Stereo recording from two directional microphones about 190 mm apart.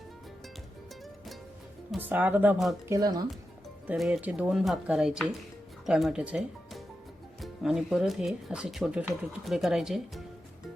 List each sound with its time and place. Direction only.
1.9 s speech: 10° right (ahead or behind)
2.9 s speech: 20° right (ahead or behind)
3.8 s speech: centre (ahead or behind)